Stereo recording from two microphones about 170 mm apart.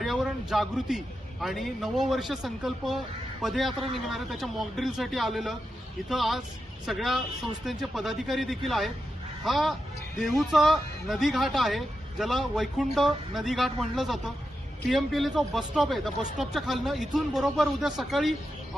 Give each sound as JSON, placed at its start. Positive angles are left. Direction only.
{"t": 0.0, "sound": "a man's voice", "side_deg": 0}